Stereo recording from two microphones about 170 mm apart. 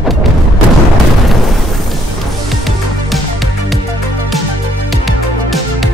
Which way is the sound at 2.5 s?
Centre (ahead or behind).